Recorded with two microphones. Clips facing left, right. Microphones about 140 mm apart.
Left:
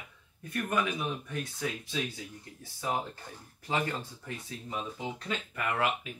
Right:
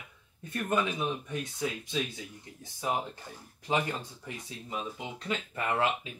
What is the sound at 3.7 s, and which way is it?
Speech, 15° right (ahead or behind).